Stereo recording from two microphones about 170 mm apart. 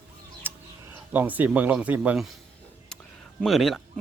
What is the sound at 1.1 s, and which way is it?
Speech, 10° right (ahead or behind).